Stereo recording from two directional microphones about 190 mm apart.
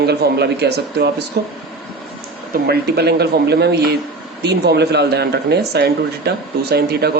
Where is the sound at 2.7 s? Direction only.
55° right (ahead or behind).